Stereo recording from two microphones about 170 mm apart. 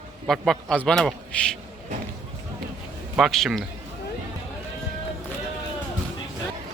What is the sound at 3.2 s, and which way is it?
Speech, centre (ahead or behind).